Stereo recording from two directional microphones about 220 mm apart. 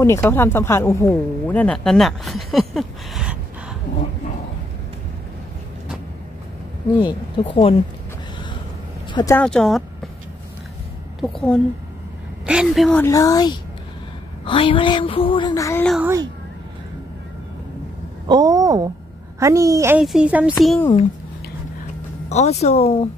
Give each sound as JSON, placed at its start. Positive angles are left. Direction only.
{"t": 0.0, "sound": "speech", "side_deg": 10}
{"t": 7.0, "sound": "a sound", "side_deg": 20}
{"t": 9.1, "sound": "a woman's voice", "side_deg": 15}
{"t": 11.1, "sound": "a woman's voice", "side_deg": 0}
{"t": 13.0, "sound": "speech", "side_deg": 15}
{"t": 14.4, "sound": "a sound", "side_deg": 25}
{"t": 15.9, "sound": "speech", "side_deg": -5}
{"t": 18.3, "sound": "a woman's voice", "side_deg": -15}
{"t": 22.3, "sound": "a sound", "side_deg": 30}